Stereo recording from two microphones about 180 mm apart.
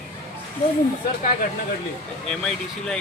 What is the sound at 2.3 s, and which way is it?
Speech, 5° left (ahead or behind).